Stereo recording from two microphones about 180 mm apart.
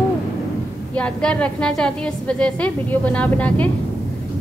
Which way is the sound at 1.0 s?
5° left (ahead or behind).